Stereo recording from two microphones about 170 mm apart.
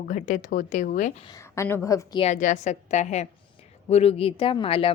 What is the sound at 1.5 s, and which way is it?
Speech, 15° left (ahead or behind).